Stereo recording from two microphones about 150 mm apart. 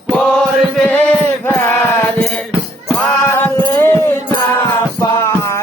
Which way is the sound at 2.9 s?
10° left (ahead or behind).